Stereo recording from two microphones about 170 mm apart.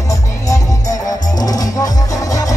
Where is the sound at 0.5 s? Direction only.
20° left (ahead or behind).